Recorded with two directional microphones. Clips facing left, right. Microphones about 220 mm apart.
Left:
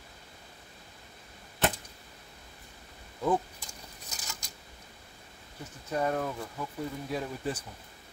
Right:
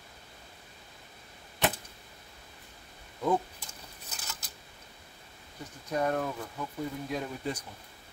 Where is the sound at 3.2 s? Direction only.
Centre (ahead or behind).